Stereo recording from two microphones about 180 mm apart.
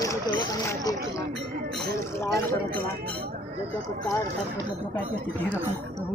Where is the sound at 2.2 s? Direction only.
15° left (ahead or behind).